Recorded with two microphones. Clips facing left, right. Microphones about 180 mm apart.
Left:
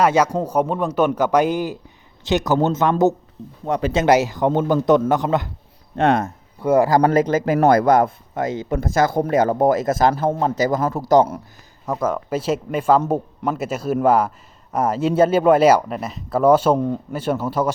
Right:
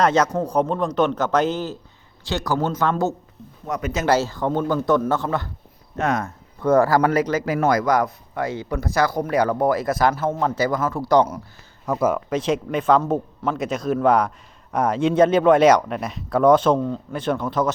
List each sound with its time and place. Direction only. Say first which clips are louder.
0.0 s a man's voice: left 2 dB; 10° left (ahead or behind)
3.7 s speech: left 5 dB; 30° left (ahead or behind)
4.0 s a man's voice: left 3 dB; 15° left (ahead or behind)
6.0 s speech: left 5 dB; 30° left (ahead or behind)
6.6 s a man's voice: left 1 dB; 10° left (ahead or behind)
7.5 s speech: left 5 dB; 50° left (ahead or behind)
7.9 s speech: left 4 dB; 25° left (ahead or behind)
11.0 s speech: left 2 dB; 45° left (ahead or behind)
11.9 s speech: right 1 dB; 5° right (ahead or behind)
12.3 s a man's voice: even; 5° left (ahead or behind)
16.7 s speech: left 2 dB; 20° left (ahead or behind)
17.1 s a man's voice: left 1 dB; 10° left (ahead or behind)